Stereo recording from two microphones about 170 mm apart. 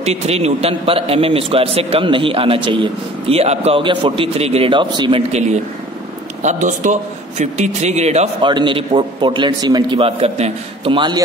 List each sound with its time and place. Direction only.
0.0 s a man's voice: 40° right (ahead or behind)
6.4 s a man's voice: 50° right (ahead or behind)
8.4 s a man's voice: 25° right (ahead or behind)